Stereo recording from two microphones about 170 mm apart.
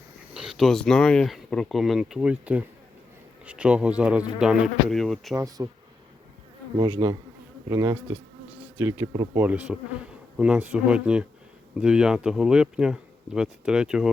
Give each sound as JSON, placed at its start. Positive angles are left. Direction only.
{"t": 0.3, "sound": "speech", "side_deg": 0}
{"t": 5.3, "sound": "speech", "side_deg": -20}
{"t": 6.7, "sound": "bee", "side_deg": -25}
{"t": 7.7, "sound": "speech", "side_deg": -15}